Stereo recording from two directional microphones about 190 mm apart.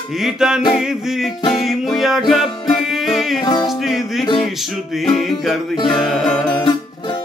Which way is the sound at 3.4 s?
25° left (ahead or behind).